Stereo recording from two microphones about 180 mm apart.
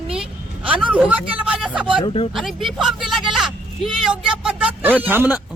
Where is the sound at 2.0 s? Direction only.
30° left (ahead or behind).